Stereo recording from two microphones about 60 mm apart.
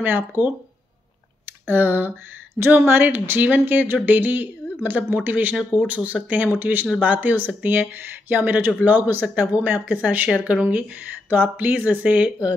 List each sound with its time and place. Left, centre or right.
1.7 s speech: right